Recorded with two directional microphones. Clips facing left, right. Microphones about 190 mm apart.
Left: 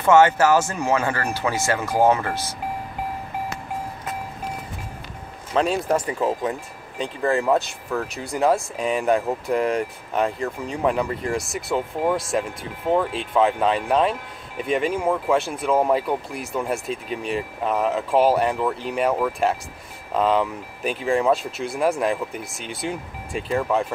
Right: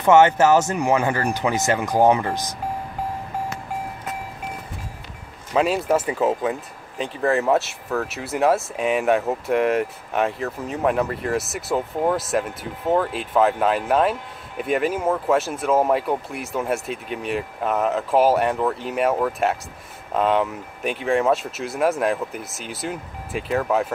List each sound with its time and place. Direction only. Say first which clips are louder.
0.0 s speech: right 1 dB; 20° right (ahead or behind)
5.5 s speech: right 1 dB; 5° right (ahead or behind)